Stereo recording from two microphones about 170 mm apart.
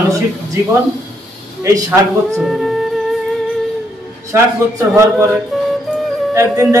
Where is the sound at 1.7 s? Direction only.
20° right (ahead or behind).